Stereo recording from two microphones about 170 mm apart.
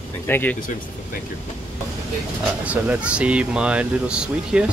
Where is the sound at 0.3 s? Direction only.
10° left (ahead or behind).